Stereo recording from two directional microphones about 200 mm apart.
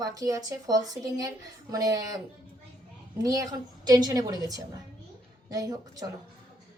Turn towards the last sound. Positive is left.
turn(degrees=-20)  # may be behind; listen again after turning